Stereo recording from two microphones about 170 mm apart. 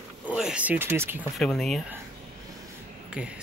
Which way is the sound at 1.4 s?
Centre (ahead or behind).